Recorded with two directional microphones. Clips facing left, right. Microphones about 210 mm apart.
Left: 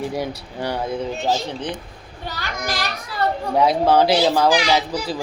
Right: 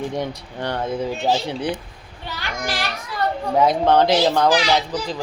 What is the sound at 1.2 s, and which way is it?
Speech, 10° right (ahead or behind).